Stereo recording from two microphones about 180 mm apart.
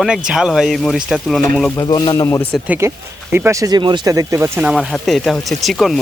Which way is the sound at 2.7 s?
15° right (ahead or behind).